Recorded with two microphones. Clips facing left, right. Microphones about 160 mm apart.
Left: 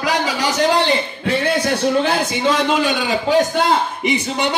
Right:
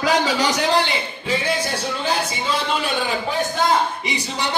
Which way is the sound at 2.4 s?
90° left.